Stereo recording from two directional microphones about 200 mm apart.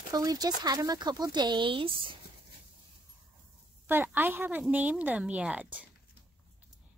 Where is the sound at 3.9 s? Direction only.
10° right (ahead or behind).